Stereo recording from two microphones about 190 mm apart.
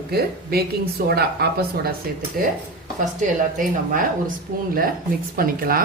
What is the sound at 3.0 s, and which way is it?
Speech, 45° right (ahead or behind).